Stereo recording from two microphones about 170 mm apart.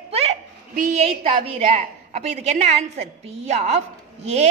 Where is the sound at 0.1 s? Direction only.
35° right (ahead or behind).